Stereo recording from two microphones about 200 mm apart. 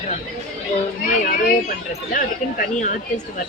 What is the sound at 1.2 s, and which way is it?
Speech, 40° left (ahead or behind).